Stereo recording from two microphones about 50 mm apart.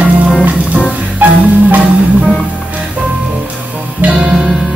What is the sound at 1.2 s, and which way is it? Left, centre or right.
Marimba, right.